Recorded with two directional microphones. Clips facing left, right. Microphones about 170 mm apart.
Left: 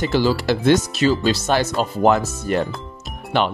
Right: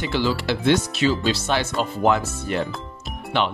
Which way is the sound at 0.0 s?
40° left (ahead or behind).